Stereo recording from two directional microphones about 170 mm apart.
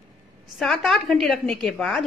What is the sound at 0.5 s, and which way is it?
A woman's voice, centre (ahead or behind).